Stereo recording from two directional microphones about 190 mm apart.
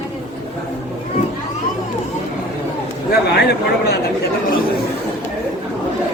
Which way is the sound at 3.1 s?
60° left (ahead or behind).